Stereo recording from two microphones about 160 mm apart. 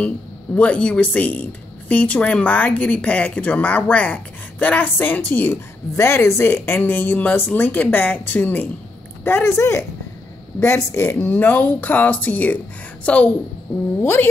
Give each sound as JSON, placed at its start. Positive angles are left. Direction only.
{"t": 0.6, "sound": "a woman's voice", "side_deg": 5}